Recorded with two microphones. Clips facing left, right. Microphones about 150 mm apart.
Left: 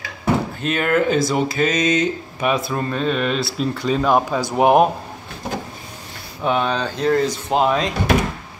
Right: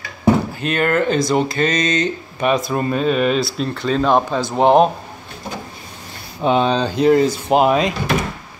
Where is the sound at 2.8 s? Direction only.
5° right (ahead or behind); by 4.9 s 10° left (ahead or behind).